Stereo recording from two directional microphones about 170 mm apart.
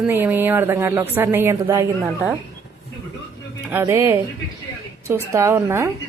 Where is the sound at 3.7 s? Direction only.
15° right (ahead or behind).